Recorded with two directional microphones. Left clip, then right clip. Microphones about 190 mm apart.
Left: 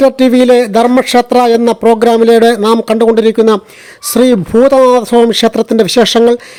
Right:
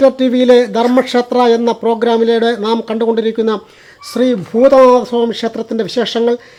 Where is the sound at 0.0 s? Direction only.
25° left (ahead or behind).